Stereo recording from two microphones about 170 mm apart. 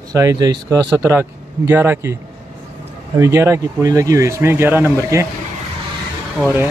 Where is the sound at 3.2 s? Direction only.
15° right (ahead or behind).